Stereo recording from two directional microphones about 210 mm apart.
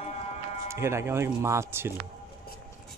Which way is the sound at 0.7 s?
10° right (ahead or behind).